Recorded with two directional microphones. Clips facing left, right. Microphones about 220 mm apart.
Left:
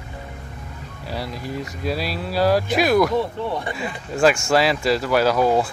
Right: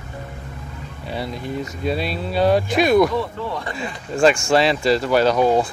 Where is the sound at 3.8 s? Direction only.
5° left (ahead or behind).